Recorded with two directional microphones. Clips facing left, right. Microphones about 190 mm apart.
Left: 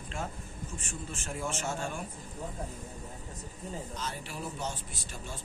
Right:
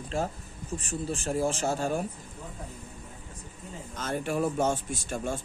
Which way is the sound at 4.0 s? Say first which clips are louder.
Right 10 dB; 50° right (ahead or behind).